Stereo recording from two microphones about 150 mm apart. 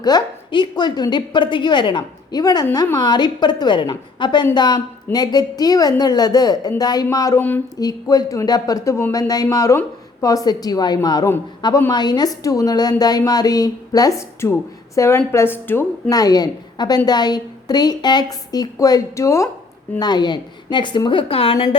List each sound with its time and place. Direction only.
0.0 s a woman's voice: 30° left (ahead or behind)